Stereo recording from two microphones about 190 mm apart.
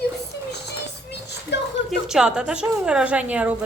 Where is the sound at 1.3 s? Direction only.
65° left (ahead or behind).